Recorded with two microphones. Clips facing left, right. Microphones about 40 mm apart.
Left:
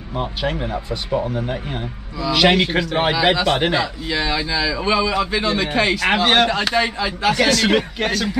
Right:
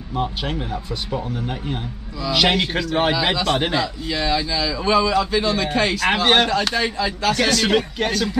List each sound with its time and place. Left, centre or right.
0.1 s speech: centre
0.7 s speech: left
1.5 s a man's voice: centre
6.0 s a man's voice: centre
7.4 s a man's voice: centre